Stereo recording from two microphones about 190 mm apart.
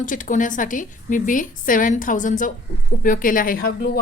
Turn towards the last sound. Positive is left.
turn(degrees=50)  # may be behind; listen again after turning